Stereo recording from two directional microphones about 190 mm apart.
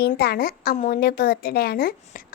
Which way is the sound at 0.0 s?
55° left (ahead or behind).